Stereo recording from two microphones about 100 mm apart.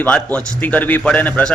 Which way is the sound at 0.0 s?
15° left (ahead or behind).